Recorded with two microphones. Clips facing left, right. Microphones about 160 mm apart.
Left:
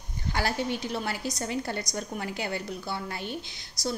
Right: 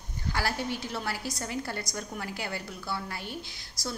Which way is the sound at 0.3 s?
20° left (ahead or behind).